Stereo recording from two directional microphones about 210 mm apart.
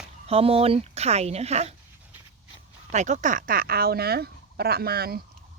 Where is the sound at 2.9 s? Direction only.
35° right (ahead or behind).